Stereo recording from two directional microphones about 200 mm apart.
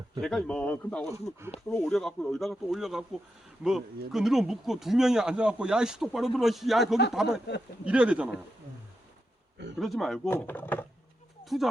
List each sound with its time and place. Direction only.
0.2 s speech: 5° left (ahead or behind)
9.7 s speech: centre (ahead or behind)
11.4 s speech: centre (ahead or behind)